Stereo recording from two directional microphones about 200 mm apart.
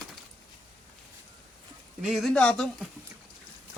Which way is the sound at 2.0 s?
Centre (ahead or behind).